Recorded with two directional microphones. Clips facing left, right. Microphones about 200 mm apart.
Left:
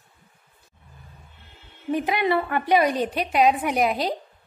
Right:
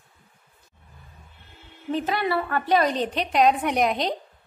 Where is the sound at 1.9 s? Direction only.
15° left (ahead or behind).